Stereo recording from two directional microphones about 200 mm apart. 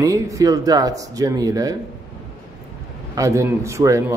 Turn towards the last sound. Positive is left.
turn(degrees=-15)  # may be behind; listen again after turning